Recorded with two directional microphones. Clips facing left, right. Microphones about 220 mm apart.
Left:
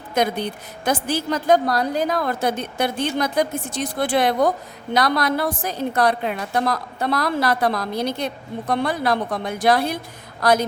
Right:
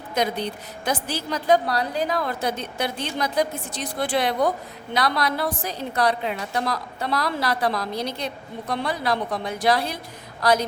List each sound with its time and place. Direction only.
0.1 s a woman's voice: 50° left (ahead or behind)